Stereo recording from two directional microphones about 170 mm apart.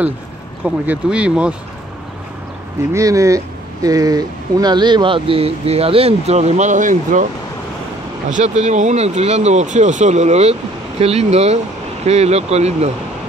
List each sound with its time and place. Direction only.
0.7 s speech: 5° right (ahead or behind)
2.9 s speech: 20° right (ahead or behind); by 7.2 s 50° right (ahead or behind)
8.3 s speech: 45° right (ahead or behind)